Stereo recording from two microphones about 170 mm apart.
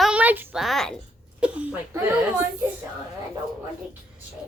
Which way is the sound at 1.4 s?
10° right (ahead or behind).